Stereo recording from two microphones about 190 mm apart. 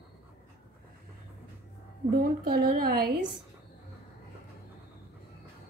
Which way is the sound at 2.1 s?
50° right (ahead or behind).